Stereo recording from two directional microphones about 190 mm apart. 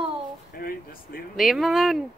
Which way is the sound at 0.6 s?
50° left (ahead or behind).